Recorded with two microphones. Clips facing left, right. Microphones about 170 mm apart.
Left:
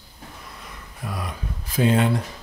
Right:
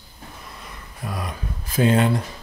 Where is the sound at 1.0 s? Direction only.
45° right (ahead or behind).